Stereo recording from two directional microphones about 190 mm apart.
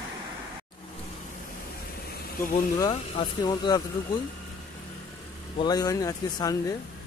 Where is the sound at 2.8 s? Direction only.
20° left (ahead or behind).